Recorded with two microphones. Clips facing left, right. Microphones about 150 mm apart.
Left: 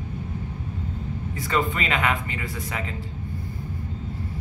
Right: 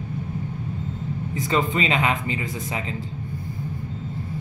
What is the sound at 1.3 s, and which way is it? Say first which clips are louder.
Speech: right 2 dB; 20° right (ahead or behind).